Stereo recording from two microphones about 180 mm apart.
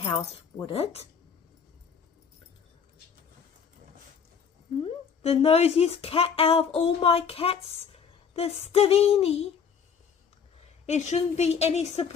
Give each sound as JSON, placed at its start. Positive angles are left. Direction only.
{"t": 0.0, "sound": "speech", "side_deg": 25}
{"t": 5.2, "sound": "speech", "side_deg": 35}
{"t": 10.8, "sound": "speech", "side_deg": 40}